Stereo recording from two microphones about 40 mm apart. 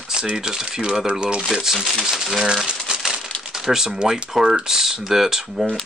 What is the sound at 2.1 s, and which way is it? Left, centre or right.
Speech, centre.